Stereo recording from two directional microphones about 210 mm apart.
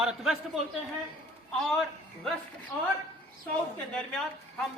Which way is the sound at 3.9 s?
5° left (ahead or behind).